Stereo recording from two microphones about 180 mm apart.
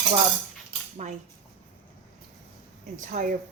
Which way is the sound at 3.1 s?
50° right (ahead or behind).